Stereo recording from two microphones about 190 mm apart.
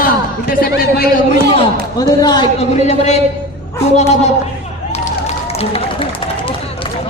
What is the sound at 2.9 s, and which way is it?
Speech, 35° left (ahead or behind).